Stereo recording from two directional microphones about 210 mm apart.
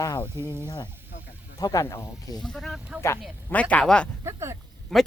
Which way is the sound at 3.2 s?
5° left (ahead or behind).